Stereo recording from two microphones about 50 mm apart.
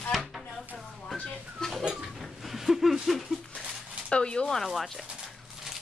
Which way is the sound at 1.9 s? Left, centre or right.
Centre.